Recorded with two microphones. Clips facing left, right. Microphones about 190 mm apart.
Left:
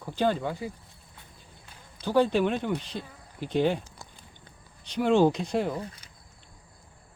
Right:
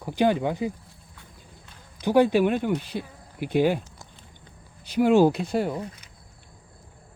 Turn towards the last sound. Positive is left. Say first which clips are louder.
# right 2 dB
turn(degrees=0)  # may be behind; listen again after turning